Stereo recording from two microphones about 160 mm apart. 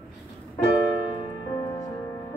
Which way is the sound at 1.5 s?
25° left (ahead or behind).